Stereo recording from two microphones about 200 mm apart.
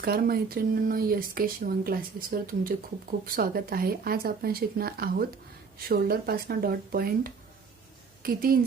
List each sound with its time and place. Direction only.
0.0 s speech: 50° right (ahead or behind)